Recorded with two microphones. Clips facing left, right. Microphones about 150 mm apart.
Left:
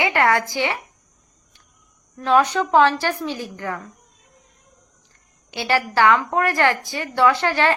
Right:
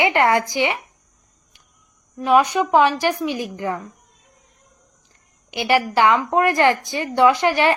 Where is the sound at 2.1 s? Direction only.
10° right (ahead or behind).